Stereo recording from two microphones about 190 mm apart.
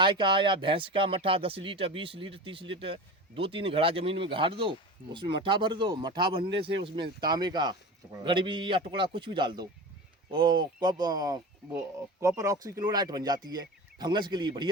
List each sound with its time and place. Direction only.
0.0 s speech: 25° right (ahead or behind)